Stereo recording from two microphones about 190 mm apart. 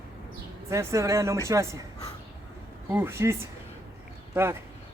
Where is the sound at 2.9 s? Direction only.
10° right (ahead or behind).